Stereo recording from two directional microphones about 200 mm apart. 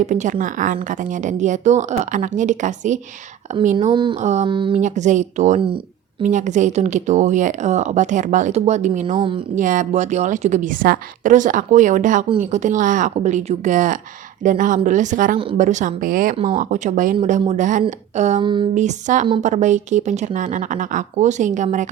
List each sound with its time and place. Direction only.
0.0 s a woman's voice: 35° right (ahead or behind)
3.9 s speech: 25° right (ahead or behind)
4.2 s a woman's voice: 35° right (ahead or behind)
4.8 s a woman's voice: 35° right (ahead or behind)
9.1 s speech: 25° right (ahead or behind)
9.6 s a woman's voice: 40° right (ahead or behind)
18.4 s speech: 25° right (ahead or behind)
18.7 s a woman's voice: 35° right (ahead or behind)